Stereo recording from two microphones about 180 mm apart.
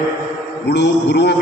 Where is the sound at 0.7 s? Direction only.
70° left (ahead or behind).